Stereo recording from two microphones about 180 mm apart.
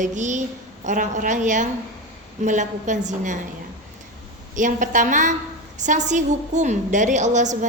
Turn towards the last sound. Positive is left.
turn(degrees=-40)  # may be behind; listen again after turning